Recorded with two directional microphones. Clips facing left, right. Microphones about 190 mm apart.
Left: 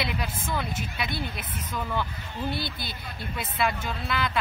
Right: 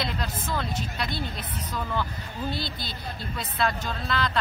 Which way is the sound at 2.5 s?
55° left (ahead or behind).